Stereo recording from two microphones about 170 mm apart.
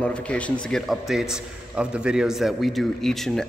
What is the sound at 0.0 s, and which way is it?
A man's voice, 5° left (ahead or behind).